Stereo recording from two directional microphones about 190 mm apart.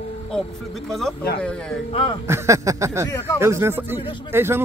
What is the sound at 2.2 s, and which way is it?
Speech, 15° right (ahead or behind).